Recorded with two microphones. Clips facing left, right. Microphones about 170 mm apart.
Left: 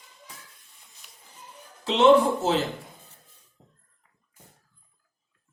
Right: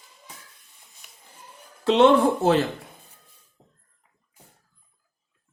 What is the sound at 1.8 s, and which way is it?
Speech, 60° right (ahead or behind).